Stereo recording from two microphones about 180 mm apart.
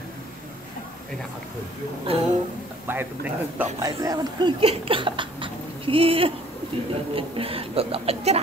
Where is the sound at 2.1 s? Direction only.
30° right (ahead or behind).